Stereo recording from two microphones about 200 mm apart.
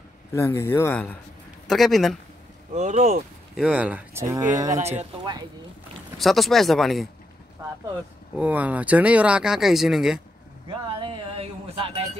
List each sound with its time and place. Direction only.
0.3 s speech: 15° left (ahead or behind)
2.7 s speech: 35° right (ahead or behind)
3.5 s speech: 5° right (ahead or behind)
4.7 s speech: 35° right (ahead or behind)
6.1 s speech: centre (ahead or behind)
8.4 s speech: 5° right (ahead or behind)
10.7 s a sound: 25° right (ahead or behind)